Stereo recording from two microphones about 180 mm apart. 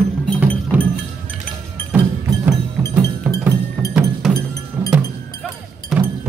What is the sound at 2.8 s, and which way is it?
Music, 15° right (ahead or behind).